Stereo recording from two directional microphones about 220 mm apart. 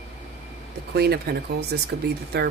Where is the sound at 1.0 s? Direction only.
45° right (ahead or behind).